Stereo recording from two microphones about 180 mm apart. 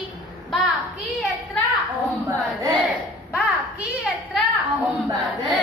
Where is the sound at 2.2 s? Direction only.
25° right (ahead or behind).